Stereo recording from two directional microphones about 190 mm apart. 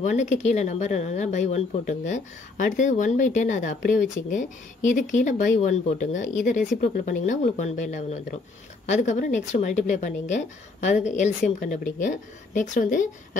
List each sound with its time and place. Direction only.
0.0 s speech: 40° left (ahead or behind)